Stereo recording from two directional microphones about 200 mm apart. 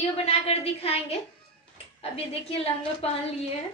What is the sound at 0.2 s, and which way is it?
Speech, 30° left (ahead or behind).